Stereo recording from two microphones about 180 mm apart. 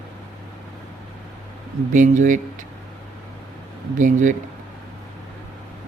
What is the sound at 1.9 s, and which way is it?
Speech, 45° right (ahead or behind).